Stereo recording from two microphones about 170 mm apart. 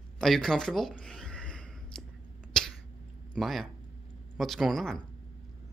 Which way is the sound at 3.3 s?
Centre (ahead or behind).